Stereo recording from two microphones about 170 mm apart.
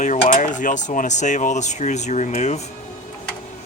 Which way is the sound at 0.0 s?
45° left (ahead or behind).